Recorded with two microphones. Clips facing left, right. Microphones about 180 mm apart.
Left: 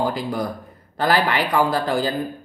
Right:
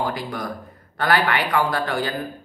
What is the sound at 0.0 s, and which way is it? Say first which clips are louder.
Speech: left 4 dB; 25° left (ahead or behind).